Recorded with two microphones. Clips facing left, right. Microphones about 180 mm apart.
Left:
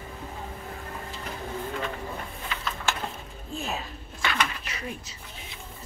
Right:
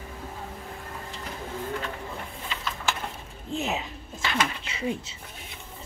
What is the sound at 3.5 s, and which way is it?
Mechanisms, 20° right (ahead or behind).